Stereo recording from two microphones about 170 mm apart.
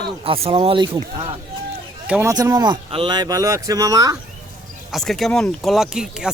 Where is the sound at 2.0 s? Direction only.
10° right (ahead or behind).